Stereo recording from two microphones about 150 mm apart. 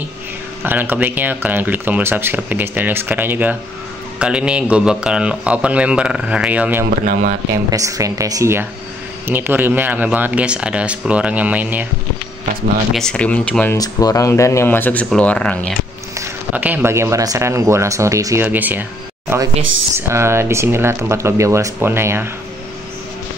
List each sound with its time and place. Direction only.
0.6 s speech: 10° right (ahead or behind)
7.1 s speech: 70° right (ahead or behind)
7.7 s speech: 20° right (ahead or behind)
12.9 s speech: 5° left (ahead or behind)
13.7 s speech: 25° left (ahead or behind); by 15.7 s 5° left (ahead or behind)
16.2 s speech: 10° right (ahead or behind)